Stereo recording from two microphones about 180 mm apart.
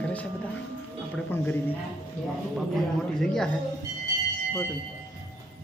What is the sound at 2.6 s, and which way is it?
Speech, centre (ahead or behind).